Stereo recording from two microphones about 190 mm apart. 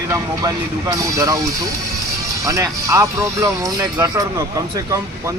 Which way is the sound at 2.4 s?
15° right (ahead or behind).